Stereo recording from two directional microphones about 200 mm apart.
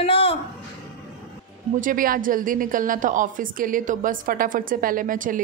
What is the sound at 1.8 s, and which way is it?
A woman's voice, 45° right (ahead or behind).